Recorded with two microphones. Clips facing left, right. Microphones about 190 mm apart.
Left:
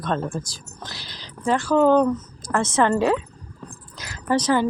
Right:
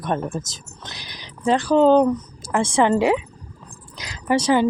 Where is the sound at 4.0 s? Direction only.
15° right (ahead or behind).